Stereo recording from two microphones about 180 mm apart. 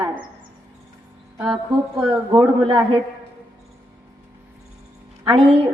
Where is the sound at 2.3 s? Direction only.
25° right (ahead or behind).